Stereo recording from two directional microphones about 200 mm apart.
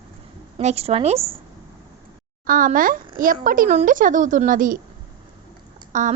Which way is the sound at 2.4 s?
45° right (ahead or behind).